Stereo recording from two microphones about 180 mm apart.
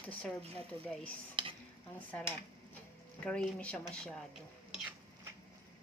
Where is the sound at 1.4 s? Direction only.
25° right (ahead or behind).